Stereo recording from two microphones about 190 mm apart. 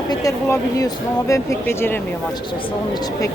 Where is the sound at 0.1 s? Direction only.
20° left (ahead or behind).